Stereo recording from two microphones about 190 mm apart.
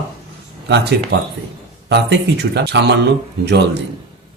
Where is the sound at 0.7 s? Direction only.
60° right (ahead or behind).